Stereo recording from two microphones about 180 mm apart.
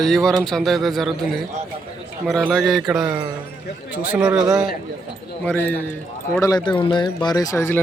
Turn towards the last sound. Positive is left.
turn(degrees=15)  # may be behind; listen again after turning